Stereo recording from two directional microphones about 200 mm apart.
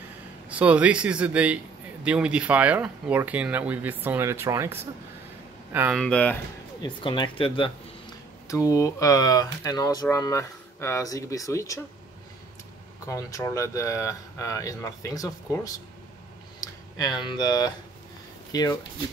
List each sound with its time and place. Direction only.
0.5 s speech: 5° right (ahead or behind)
5.9 s speech: 5° left (ahead or behind)
6.8 s speech: 25° left (ahead or behind)
13.0 s speech: 15° left (ahead or behind)